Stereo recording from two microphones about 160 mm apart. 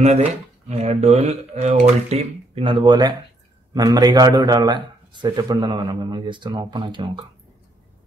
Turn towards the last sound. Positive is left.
turn(degrees=-30)  # may be behind; listen again after turning